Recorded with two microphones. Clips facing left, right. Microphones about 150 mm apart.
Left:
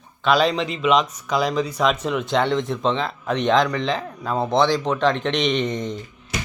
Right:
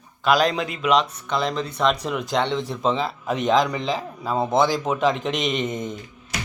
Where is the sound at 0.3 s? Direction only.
Centre (ahead or behind).